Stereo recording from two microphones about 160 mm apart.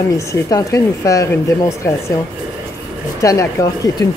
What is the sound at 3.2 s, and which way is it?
Speech, 20° left (ahead or behind).